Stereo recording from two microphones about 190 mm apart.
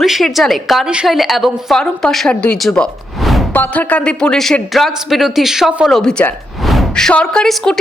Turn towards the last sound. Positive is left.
turn(degrees=0)  # may be behind; listen again after turning